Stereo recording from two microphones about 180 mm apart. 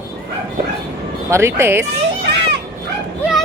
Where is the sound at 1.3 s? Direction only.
15° right (ahead or behind).